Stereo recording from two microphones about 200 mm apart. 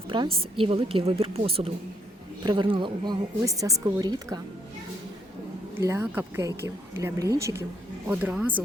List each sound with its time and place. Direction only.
0.1 s a woman's voice: 25° right (ahead or behind)
5.7 s a woman's voice: 10° right (ahead or behind)